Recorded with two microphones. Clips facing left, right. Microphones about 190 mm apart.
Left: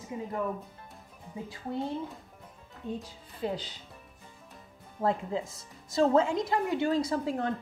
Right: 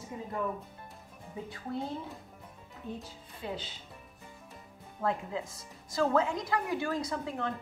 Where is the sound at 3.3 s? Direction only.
40° left (ahead or behind).